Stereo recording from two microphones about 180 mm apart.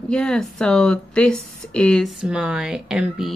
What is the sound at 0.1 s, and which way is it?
Speech, 5° left (ahead or behind).